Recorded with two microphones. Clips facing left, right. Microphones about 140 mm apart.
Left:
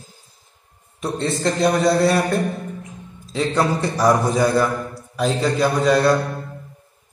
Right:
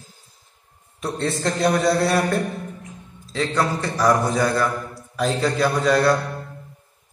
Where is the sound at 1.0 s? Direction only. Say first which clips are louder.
Left 2 dB; 5° right (ahead or behind).